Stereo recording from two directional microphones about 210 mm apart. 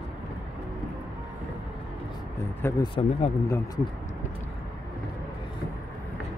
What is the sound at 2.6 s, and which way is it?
Speech, 20° left (ahead or behind).